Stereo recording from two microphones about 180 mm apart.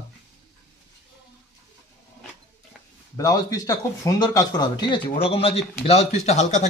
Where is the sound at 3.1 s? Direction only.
20° left (ahead or behind); by 6.7 s 40° left (ahead or behind).